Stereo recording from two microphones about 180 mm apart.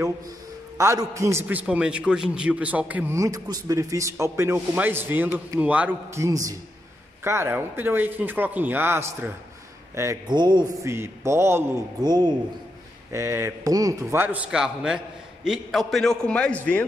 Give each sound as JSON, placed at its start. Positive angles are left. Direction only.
{"t": 0.7, "sound": "a man's voice", "side_deg": -15}